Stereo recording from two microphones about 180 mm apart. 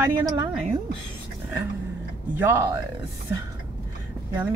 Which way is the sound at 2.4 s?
15° right (ahead or behind).